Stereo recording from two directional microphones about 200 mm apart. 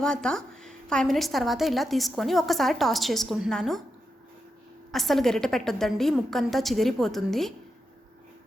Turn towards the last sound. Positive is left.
turn(degrees=0)  # may be behind; listen again after turning